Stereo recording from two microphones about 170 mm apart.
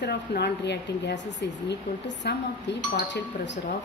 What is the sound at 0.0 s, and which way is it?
Speech, 80° left.